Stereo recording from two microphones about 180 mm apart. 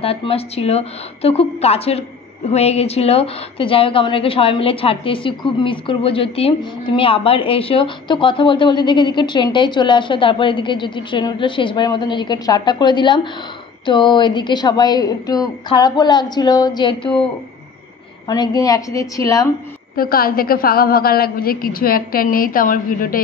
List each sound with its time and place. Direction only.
0.0 s a woman's voice: 30° left (ahead or behind)
18.2 s a woman's voice: 20° left (ahead or behind)
20.0 s a woman's voice: 55° left (ahead or behind)